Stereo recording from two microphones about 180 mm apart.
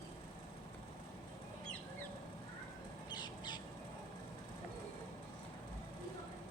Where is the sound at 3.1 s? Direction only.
25° left (ahead or behind).